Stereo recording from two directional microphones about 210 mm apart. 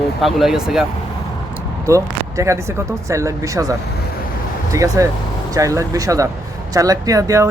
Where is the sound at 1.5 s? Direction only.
15° right (ahead or behind).